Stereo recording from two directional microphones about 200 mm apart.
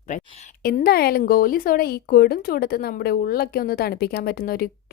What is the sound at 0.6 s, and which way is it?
Speech, 50° left (ahead or behind).